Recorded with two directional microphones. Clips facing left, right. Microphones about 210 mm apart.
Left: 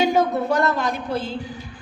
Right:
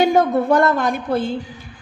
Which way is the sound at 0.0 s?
50° right (ahead or behind).